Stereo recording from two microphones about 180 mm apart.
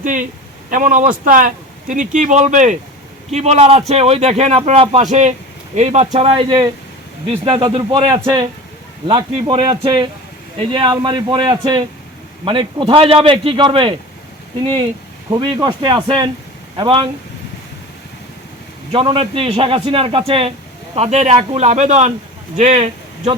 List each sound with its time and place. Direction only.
0.0 s a man's voice: 45° right (ahead or behind); by 13.9 s 30° right (ahead or behind)
15.3 s speech: 25° right (ahead or behind)
18.9 s a man's voice: 30° right (ahead or behind)